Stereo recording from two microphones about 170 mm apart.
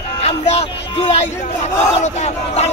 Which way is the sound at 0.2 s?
35° left (ahead or behind).